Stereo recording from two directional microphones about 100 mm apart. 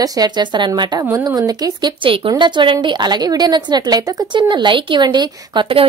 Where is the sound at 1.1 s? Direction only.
35° right (ahead or behind).